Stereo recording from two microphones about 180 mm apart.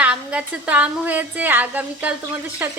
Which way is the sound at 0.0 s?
5° right (ahead or behind).